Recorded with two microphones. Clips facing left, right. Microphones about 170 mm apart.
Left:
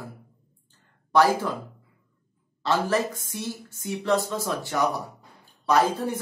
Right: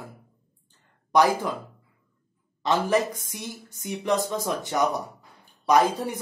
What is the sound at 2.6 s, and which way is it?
Speech, 15° right (ahead or behind).